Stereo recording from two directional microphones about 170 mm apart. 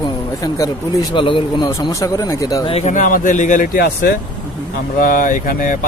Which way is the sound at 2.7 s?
40° left (ahead or behind).